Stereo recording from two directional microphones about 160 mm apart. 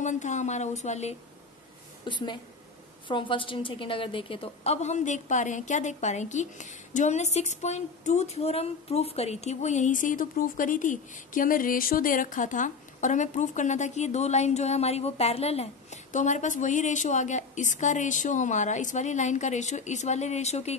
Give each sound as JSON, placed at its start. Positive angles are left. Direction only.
{"t": 0.0, "sound": "a woman's voice", "side_deg": 50}
{"t": 2.0, "sound": "a woman's voice", "side_deg": 30}